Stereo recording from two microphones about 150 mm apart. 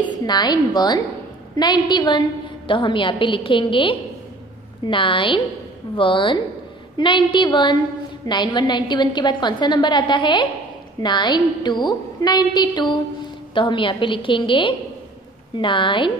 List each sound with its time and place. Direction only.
0.0 s a woman's voice: 30° left (ahead or behind)